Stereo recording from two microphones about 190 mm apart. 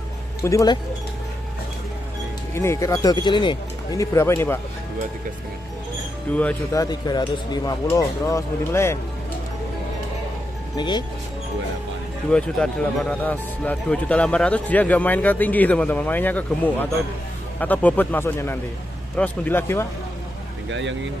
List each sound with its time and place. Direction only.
0.4 s speech: 15° left (ahead or behind)
2.5 s speech: 15° left (ahead or behind)
6.3 s speech: 5° left (ahead or behind)
6.8 s speech: 20° left (ahead or behind)
10.8 s speech: 20° left (ahead or behind)
12.3 s speech: 5° left (ahead or behind)